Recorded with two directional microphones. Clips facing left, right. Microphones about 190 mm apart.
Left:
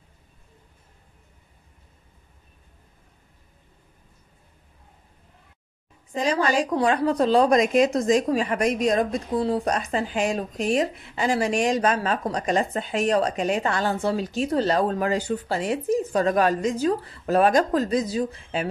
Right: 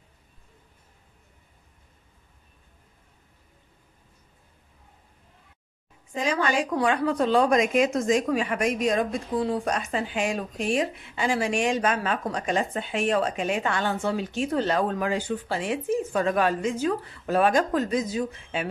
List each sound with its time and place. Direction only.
6.1 s a woman's voice: 35° left (ahead or behind)